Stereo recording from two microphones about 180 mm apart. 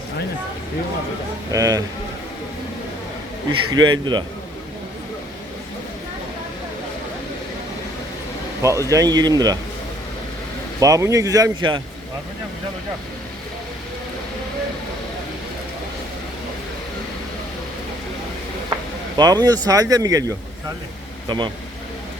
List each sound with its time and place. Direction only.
1.5 s speech: 20° right (ahead or behind)
3.5 s speech: 25° right (ahead or behind)
8.6 s speech: 15° right (ahead or behind)
10.8 s speech: 20° right (ahead or behind)
19.1 s speech: 20° right (ahead or behind)